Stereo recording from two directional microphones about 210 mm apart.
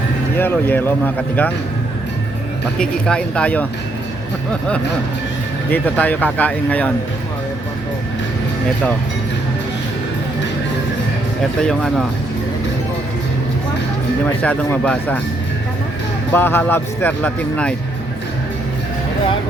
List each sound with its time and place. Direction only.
0.3 s speech: 10° left (ahead or behind)
2.7 s speech: 5° left (ahead or behind)
5.7 s speech: 10° left (ahead or behind)
11.7 s speech: centre (ahead or behind)
14.4 s speech: 5° left (ahead or behind)
16.3 s speech: 10° left (ahead or behind)